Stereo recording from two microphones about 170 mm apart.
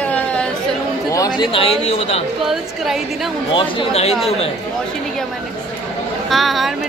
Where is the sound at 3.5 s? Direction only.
30° left (ahead or behind).